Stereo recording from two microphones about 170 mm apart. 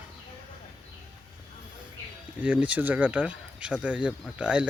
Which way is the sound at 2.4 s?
10° right (ahead or behind).